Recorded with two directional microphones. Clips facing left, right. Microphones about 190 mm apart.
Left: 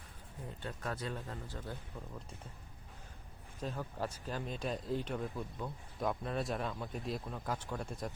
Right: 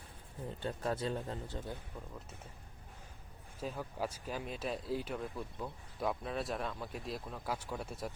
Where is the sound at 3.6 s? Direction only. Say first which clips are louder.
Even; 10° right (ahead or behind).